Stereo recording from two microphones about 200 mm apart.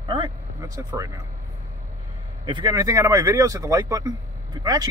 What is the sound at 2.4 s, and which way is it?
A man's voice, 20° right (ahead or behind).